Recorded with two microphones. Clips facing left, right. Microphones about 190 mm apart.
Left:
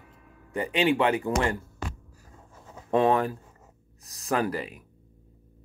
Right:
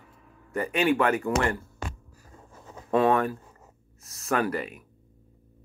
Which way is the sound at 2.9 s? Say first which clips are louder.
Even; 30° left (ahead or behind).